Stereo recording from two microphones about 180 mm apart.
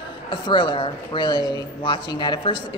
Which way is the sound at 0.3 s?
25° left (ahead or behind).